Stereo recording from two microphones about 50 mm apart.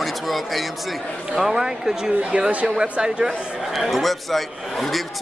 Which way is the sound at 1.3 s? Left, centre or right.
Centre.